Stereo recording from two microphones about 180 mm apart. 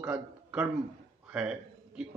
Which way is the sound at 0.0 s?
10° right (ahead or behind).